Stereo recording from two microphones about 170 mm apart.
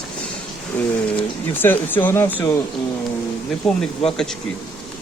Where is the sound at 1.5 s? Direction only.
10° left (ahead or behind).